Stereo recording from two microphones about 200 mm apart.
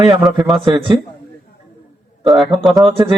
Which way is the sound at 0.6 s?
20° right (ahead or behind).